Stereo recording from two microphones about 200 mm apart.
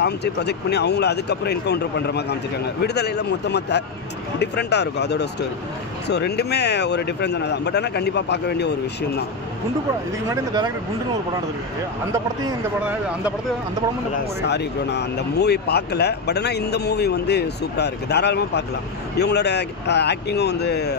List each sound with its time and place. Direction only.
0.0 s speech: 55° left (ahead or behind)
10.3 s speech: 20° right (ahead or behind)
12.1 s speech: 10° right (ahead or behind)
14.4 s speech: 55° left (ahead or behind)